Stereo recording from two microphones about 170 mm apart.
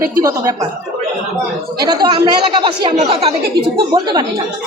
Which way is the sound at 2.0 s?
25° right (ahead or behind).